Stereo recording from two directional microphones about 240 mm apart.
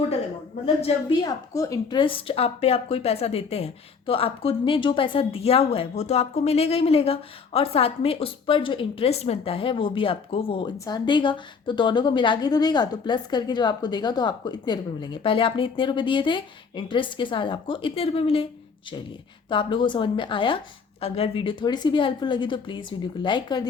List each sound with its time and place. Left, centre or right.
0.6 s a woman's voice: centre
19.5 s a woman's voice: left